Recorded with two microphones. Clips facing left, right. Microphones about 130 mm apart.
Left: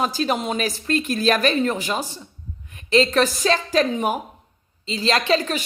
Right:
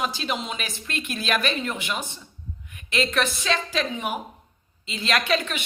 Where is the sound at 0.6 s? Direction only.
40° left (ahead or behind).